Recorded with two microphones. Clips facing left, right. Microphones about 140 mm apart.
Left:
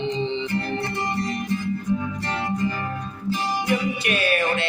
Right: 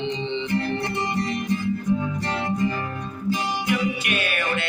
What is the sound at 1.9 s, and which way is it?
Music, 15° right (ahead or behind).